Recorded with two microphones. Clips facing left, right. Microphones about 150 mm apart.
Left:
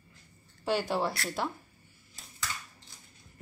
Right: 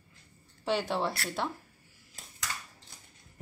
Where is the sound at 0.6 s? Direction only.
Centre (ahead or behind).